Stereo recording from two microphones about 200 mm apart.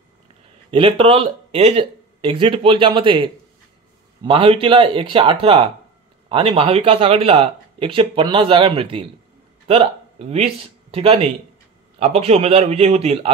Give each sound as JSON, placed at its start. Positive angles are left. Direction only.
{"t": 0.7, "sound": "speech", "side_deg": -25}